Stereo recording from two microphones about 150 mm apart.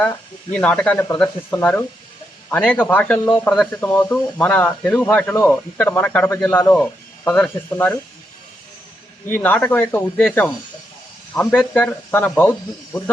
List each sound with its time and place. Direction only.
0.0 s speech: 10° left (ahead or behind)
9.2 s speech: 15° left (ahead or behind)